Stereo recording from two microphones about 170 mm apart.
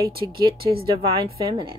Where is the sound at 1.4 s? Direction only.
25° right (ahead or behind).